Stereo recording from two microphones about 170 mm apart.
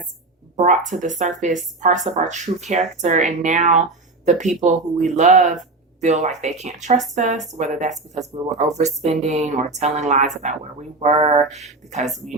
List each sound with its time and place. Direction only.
0.5 s speech: 45° right (ahead or behind)
11.4 s speech: centre (ahead or behind)
11.9 s speech: 45° right (ahead or behind)